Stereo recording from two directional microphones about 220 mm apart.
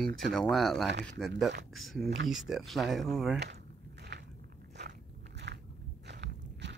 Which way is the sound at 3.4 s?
50° right (ahead or behind).